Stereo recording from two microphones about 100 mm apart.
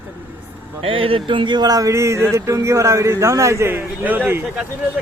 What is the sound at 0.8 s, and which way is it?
A man's voice, 65° right (ahead or behind).